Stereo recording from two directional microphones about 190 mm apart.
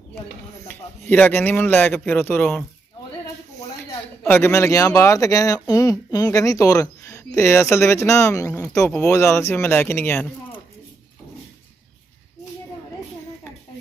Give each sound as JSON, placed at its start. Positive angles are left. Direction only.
{"t": 0.7, "sound": "speech", "side_deg": 10}
{"t": 4.2, "sound": "speech", "side_deg": 10}